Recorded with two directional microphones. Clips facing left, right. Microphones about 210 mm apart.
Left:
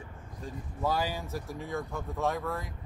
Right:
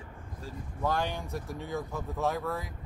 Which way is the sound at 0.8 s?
5° left (ahead or behind).